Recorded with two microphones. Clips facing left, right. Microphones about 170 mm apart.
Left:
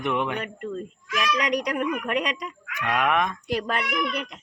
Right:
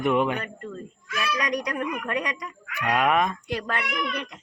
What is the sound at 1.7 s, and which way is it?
Speech, 15° left (ahead or behind).